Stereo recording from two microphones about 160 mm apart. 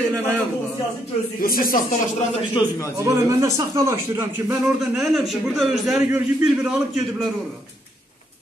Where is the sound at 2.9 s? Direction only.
20° right (ahead or behind).